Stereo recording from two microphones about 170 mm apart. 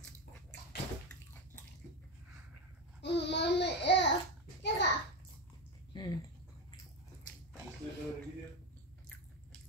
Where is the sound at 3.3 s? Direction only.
90° left.